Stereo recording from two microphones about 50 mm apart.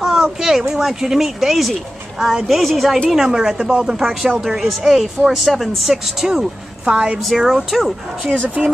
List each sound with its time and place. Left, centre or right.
0.0 s a sound: centre
0.7 s speech: centre
3.3 s speech: centre
7.3 s speech: centre
8.6 s speech: right